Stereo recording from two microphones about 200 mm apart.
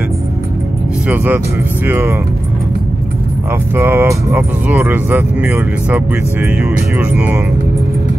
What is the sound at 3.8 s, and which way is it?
Speech, 10° right (ahead or behind).